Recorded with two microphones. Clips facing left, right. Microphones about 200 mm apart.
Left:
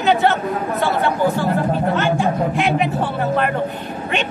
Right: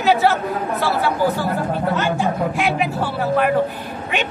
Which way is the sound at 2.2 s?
5° right (ahead or behind).